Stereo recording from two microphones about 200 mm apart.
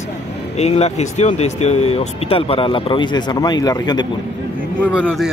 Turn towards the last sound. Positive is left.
turn(degrees=-5)  # may be behind; listen again after turning